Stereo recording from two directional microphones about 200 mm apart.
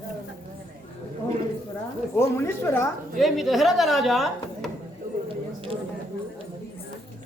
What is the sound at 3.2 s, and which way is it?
Speech, centre (ahead or behind).